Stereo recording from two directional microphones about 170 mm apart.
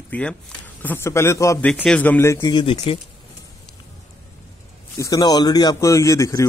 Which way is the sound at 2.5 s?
30° left (ahead or behind).